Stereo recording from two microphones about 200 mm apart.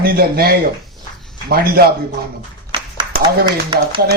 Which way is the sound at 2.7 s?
20° right (ahead or behind).